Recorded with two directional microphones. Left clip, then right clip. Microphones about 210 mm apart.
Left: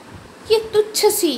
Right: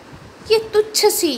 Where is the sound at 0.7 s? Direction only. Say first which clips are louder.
Right 1 dB; 15° right (ahead or behind).